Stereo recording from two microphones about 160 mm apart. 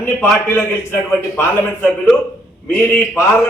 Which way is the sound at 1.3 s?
15° left (ahead or behind).